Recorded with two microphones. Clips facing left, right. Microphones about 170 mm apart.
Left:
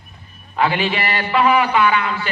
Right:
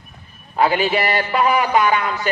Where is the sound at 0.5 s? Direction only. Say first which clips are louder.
Right 2 dB; 40° right (ahead or behind).